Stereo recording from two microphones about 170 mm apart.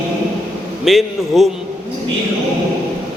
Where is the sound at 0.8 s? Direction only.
Centre (ahead or behind).